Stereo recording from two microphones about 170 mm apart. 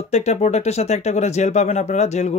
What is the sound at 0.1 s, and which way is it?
Speech, 40° left (ahead or behind).